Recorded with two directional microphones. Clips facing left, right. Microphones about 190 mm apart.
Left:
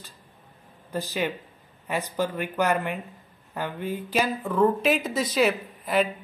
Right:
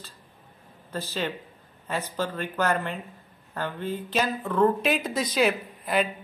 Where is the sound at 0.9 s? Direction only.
15° left (ahead or behind).